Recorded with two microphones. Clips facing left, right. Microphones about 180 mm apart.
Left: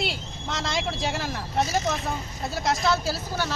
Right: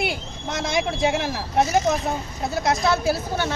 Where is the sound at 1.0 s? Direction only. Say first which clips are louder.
Right 7 dB; 65° right (ahead or behind).